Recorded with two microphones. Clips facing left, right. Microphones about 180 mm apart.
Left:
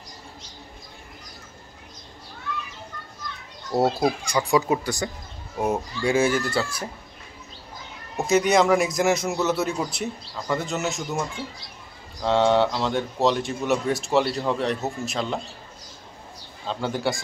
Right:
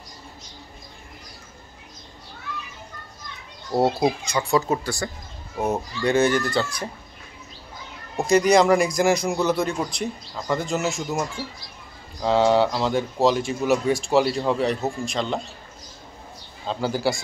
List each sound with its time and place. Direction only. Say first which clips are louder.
3.8 s speech: right 1 dB; 20° right (ahead or behind)
4.3 s speech: left 1 dB; 15° left (ahead or behind)
8.3 s a man's voice: right 2 dB; centre (ahead or behind)
16.6 s a man's voice: right 2 dB; centre (ahead or behind)